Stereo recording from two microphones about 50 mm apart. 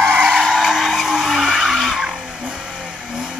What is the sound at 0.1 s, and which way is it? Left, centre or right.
Vehicle, centre.